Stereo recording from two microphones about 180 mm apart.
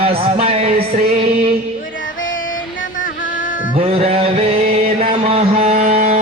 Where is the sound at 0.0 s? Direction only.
35° right (ahead or behind).